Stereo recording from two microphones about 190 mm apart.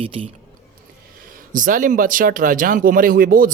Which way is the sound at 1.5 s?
45° right (ahead or behind).